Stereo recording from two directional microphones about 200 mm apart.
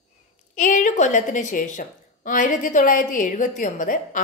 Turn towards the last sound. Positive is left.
turn(degrees=40)  # may be behind; listen again after turning